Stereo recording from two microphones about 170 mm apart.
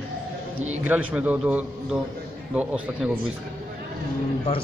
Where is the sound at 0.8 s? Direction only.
10° right (ahead or behind).